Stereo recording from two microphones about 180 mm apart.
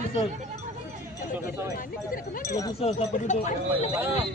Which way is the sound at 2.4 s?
15° left (ahead or behind).